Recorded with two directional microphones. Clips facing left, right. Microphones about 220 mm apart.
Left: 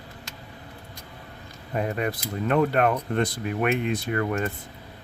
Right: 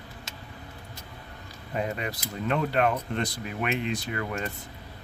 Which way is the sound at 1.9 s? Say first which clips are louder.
Left 6 dB; 50° left (ahead or behind).